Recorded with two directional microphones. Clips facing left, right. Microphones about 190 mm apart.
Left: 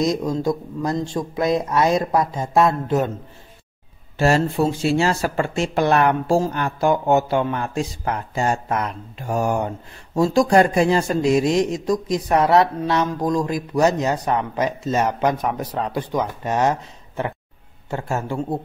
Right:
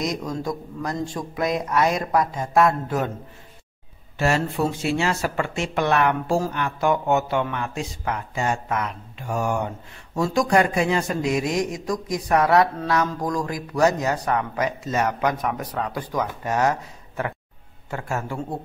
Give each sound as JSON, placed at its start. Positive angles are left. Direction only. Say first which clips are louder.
{"t": 0.0, "sound": "a man's voice", "louder": "left 6 dB", "side_deg": 25}
{"t": 4.2, "sound": "a man's voice", "louder": "left 4 dB", "side_deg": 30}
{"t": 17.8, "sound": "a man's voice", "louder": "left 3 dB", "side_deg": 25}